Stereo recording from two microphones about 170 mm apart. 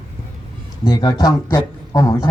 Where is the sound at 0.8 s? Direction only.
25° left (ahead or behind).